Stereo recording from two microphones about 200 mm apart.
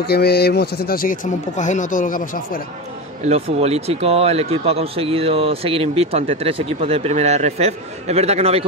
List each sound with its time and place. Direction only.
0.0 s a man's voice: 55° left (ahead or behind)
3.3 s speech: 30° right (ahead or behind)